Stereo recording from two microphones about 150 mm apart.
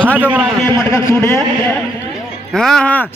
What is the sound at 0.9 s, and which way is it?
Speech, 20° left (ahead or behind).